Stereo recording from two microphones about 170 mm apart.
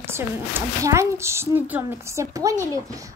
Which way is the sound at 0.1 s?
15° right (ahead or behind).